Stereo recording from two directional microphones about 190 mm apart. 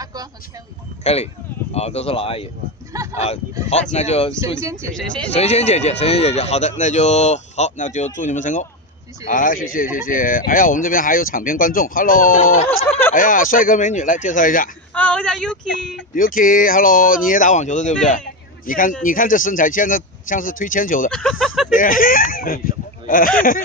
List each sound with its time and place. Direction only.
0.0 s vehicle: 20° right (ahead or behind)
1.0 s speech: 35° left (ahead or behind)
2.9 s speech: 15° right (ahead or behind)
3.9 s speech: 35° left (ahead or behind)
4.9 s speech: 5° left (ahead or behind)
5.3 s speech: 35° left (ahead or behind)
15.0 s speech: 5° left (ahead or behind)
16.3 s speech: 45° left (ahead or behind)
21.1 s speech: 5° left (ahead or behind)
21.7 s speech: 45° left (ahead or behind)